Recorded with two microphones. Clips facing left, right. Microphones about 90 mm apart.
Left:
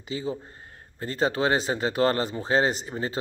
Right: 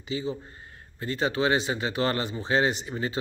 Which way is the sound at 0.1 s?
45° left (ahead or behind).